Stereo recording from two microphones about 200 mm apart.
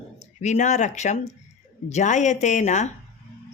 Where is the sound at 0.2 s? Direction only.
35° left (ahead or behind).